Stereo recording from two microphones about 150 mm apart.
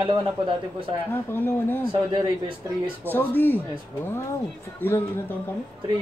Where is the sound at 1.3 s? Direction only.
15° left (ahead or behind).